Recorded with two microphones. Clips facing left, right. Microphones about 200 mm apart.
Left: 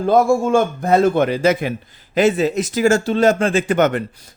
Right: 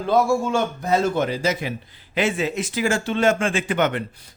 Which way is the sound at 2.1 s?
40° left (ahead or behind).